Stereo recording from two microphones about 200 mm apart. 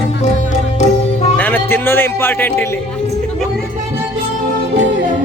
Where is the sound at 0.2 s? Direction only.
35° left (ahead or behind).